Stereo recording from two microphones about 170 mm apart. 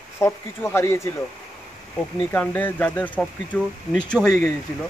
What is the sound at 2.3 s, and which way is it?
Speech, 10° left (ahead or behind).